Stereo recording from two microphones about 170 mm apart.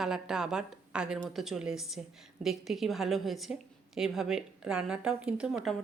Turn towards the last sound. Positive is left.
turn(degrees=-5)  # may be behind; listen again after turning